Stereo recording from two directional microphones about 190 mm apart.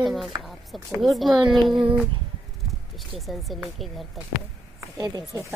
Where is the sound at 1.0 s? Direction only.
Centre (ahead or behind).